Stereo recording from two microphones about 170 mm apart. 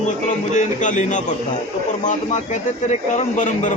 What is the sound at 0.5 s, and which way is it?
Speech, 45° left (ahead or behind).